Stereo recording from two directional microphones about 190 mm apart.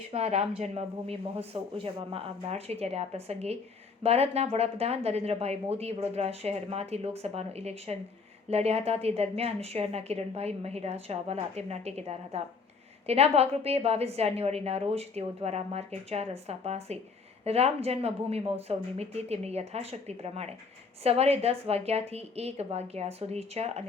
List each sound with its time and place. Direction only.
0.1 s a woman's voice: 35° right (ahead or behind)